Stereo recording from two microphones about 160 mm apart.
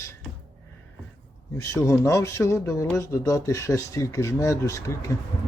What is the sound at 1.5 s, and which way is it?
Speech, 20° left (ahead or behind).